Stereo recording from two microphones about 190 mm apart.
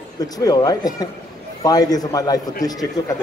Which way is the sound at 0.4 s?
20° left (ahead or behind).